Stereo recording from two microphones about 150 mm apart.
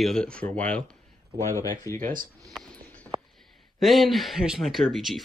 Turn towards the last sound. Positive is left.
turn(degrees=0)  # may be behind; listen again after turning